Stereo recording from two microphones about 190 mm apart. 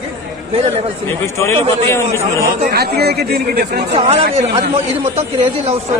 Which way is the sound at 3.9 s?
35° right (ahead or behind).